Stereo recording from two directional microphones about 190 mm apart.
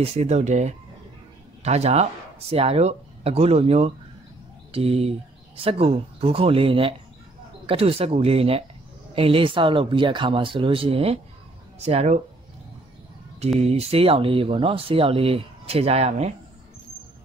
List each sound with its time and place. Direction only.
0.0 s speech: 35° right (ahead or behind)
13.6 s speech: 35° right (ahead or behind)